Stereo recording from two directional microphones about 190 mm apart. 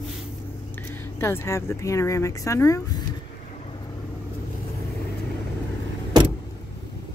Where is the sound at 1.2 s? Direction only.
15° left (ahead or behind).